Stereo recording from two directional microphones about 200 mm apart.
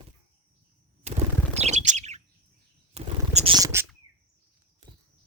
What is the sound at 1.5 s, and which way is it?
Bird, 35° right (ahead or behind).